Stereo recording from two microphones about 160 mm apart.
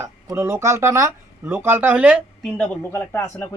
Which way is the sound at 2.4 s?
10° left (ahead or behind).